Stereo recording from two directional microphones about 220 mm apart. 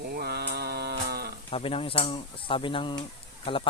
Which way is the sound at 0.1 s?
45° right (ahead or behind).